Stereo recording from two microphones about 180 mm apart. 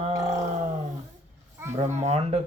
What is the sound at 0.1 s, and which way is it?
Roar, 20° right (ahead or behind).